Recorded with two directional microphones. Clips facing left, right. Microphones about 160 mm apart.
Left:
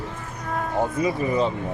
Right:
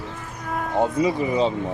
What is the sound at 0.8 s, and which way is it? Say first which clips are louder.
Speech: right 3 dB; 20° right (ahead or behind).